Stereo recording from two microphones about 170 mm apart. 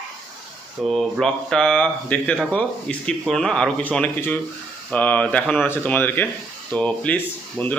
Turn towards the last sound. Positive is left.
turn(degrees=10)  # may be behind; listen again after turning